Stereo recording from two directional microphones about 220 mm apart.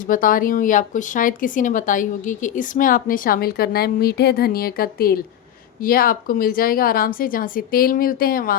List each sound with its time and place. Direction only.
0.0 s speech: 40° left (ahead or behind)